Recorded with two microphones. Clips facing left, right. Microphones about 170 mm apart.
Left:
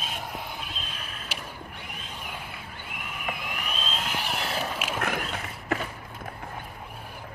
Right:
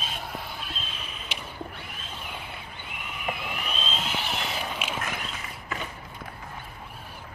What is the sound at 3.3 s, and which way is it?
Vehicle, 10° left (ahead or behind).